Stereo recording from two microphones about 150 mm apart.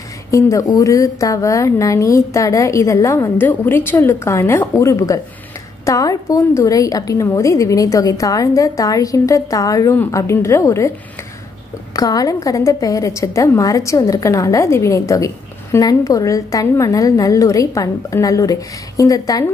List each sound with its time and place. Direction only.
0.3 s a woman's voice: 20° left (ahead or behind)
11.9 s a woman's voice: 25° left (ahead or behind)